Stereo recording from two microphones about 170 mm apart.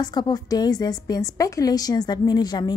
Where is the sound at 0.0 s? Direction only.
25° left (ahead or behind).